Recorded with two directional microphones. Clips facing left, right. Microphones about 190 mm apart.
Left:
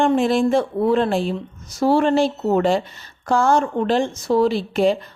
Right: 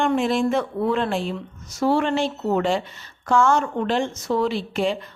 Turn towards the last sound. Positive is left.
turn(degrees=40)  # may be behind; listen again after turning